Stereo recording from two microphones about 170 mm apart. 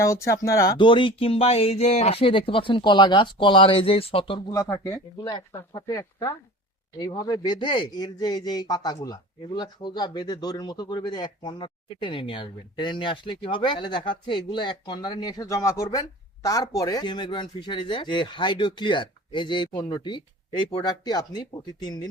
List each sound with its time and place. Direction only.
0.0 s speech: 20° left (ahead or behind)
4.5 s speech: 15° left (ahead or behind)